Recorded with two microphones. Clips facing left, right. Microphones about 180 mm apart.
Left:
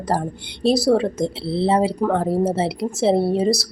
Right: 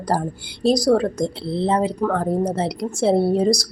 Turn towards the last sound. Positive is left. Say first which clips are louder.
# right 1 dB
turn(degrees=5)  # may be behind; listen again after turning